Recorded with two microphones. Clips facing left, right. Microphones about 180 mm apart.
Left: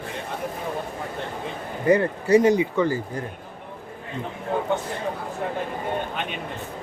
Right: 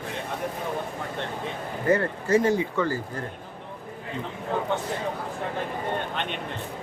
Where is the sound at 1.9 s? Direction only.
15° left (ahead or behind).